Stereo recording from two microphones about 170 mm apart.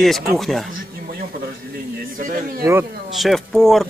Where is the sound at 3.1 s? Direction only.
Centre (ahead or behind).